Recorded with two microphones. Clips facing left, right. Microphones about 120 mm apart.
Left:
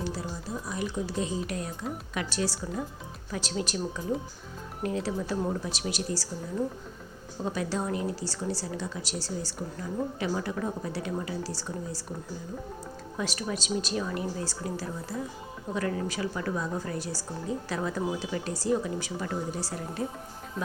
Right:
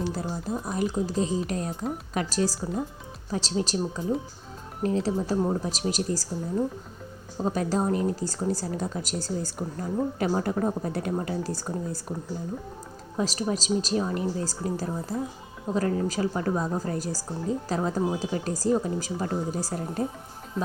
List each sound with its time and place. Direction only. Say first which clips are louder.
0.1 s speech: right 5 dB; 50° right (ahead or behind)
7.4 s speech: right 5 dB; 40° right (ahead or behind)
13.1 s speech: right 5 dB; 35° right (ahead or behind)